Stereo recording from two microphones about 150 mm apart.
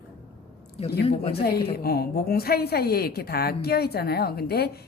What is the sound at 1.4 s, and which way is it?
A woman's voice, 90° left.